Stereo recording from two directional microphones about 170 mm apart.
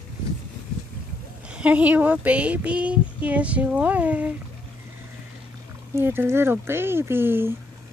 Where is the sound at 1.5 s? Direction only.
10° right (ahead or behind).